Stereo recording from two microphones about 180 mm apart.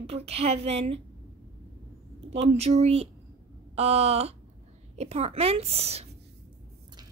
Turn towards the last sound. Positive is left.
turn(degrees=-35)  # may be behind; listen again after turning